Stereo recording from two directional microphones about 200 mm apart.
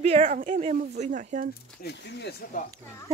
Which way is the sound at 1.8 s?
55° left (ahead or behind).